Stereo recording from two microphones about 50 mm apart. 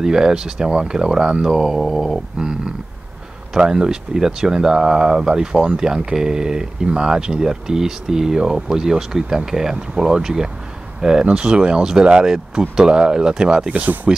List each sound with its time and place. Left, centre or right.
0.0 s speech: centre
2.3 s speech: centre
13.7 s speech: right